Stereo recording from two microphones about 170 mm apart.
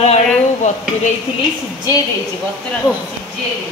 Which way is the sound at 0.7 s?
45° left (ahead or behind).